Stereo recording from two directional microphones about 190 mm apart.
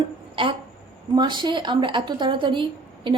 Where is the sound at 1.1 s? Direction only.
25° right (ahead or behind).